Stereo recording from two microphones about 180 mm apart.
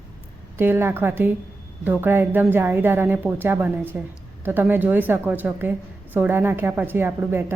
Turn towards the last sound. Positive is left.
turn(degrees=-10)  # may be behind; listen again after turning